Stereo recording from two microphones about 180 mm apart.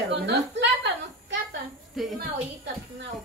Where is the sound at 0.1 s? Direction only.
75° right (ahead or behind).